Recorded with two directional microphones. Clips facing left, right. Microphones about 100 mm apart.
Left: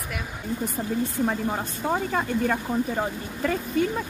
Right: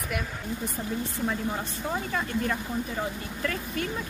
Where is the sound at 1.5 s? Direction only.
30° left (ahead or behind).